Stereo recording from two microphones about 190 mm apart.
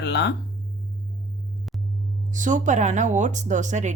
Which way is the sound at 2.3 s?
40° right (ahead or behind).